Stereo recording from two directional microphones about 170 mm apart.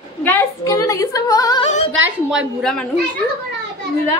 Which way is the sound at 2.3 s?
Centre (ahead or behind).